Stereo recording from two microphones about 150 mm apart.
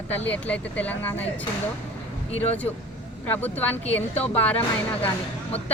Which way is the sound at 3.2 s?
10° left (ahead or behind).